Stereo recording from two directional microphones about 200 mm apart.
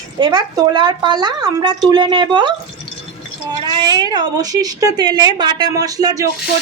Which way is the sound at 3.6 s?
20° right (ahead or behind).